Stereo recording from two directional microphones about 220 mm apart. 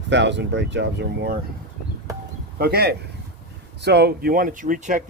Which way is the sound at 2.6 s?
45° right (ahead or behind).